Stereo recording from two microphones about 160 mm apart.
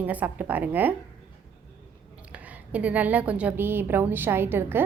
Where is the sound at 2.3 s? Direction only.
10° right (ahead or behind).